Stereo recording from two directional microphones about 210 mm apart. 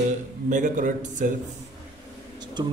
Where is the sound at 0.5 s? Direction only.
35° right (ahead or behind).